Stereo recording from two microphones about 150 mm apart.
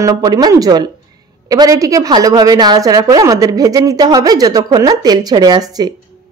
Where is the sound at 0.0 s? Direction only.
25° right (ahead or behind).